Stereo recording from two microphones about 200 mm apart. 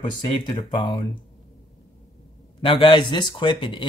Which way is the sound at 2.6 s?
25° left (ahead or behind).